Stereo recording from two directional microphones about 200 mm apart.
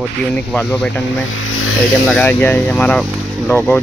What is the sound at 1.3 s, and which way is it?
Vehicle, 90° left.